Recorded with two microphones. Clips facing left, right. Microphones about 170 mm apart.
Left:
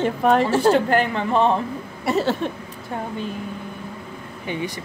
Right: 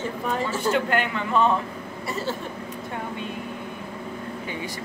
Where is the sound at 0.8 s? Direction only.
35° left (ahead or behind).